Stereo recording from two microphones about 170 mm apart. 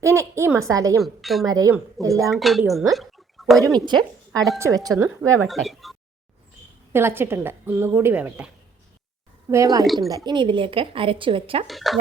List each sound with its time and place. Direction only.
0.0 s a woman's voice: 15° right (ahead or behind)
1.0 s speech: centre (ahead or behind)
1.5 s speech: 20° right (ahead or behind)
2.3 s speech: centre (ahead or behind)
2.9 s a sound: centre (ahead or behind)
3.8 s speech: 25° right (ahead or behind)
5.5 s speech: centre (ahead or behind)
6.9 s a woman's voice: 15° right (ahead or behind)
9.5 s speech: 20° right (ahead or behind)
9.8 s speech: centre (ahead or behind)
10.2 s a woman's voice: 30° right (ahead or behind)
11.7 s speech: centre (ahead or behind)